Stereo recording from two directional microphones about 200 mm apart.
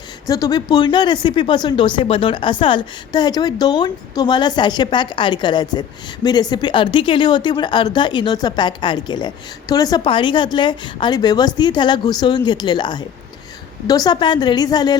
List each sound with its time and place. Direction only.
0.3 s speech: 15° left (ahead or behind)